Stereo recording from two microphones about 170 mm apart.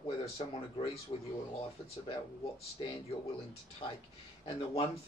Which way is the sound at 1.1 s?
35° left (ahead or behind).